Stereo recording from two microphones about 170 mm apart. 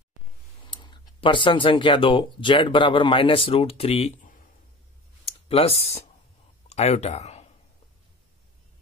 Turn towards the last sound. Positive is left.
turn(degrees=40)  # may be behind; listen again after turning